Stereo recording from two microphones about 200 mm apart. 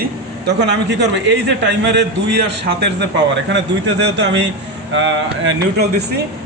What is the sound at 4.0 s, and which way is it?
Speech, 60° right (ahead or behind).